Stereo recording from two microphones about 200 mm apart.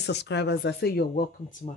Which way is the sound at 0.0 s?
60° left (ahead or behind).